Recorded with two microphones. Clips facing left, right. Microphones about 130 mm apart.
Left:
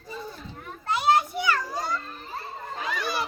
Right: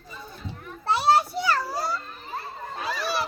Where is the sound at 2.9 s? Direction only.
35° right (ahead or behind).